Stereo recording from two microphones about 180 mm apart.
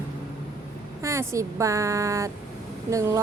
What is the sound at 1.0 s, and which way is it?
Speech, 15° right (ahead or behind).